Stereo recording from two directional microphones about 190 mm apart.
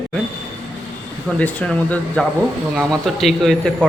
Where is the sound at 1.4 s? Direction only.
5° left (ahead or behind).